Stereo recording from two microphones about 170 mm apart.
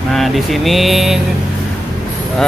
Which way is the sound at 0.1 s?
Centre (ahead or behind).